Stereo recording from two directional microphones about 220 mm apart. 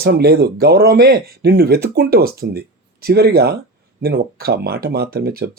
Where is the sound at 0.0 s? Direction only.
45° right (ahead or behind).